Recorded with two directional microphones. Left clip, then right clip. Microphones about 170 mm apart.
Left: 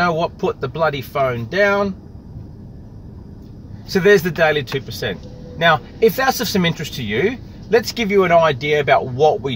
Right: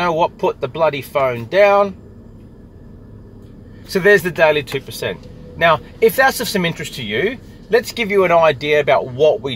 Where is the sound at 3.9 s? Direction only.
15° left (ahead or behind).